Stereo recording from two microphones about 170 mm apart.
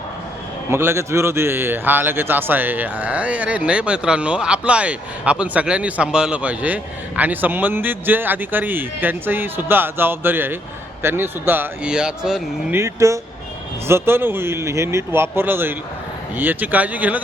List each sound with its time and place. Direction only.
0.7 s a man's voice: 15° right (ahead or behind)
12.8 s a man's voice: 20° right (ahead or behind)